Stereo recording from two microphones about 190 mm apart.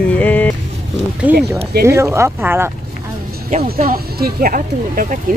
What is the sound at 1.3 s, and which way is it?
Speech, 10° right (ahead or behind).